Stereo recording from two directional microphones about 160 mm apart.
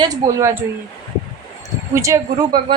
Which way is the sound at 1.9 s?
20° right (ahead or behind).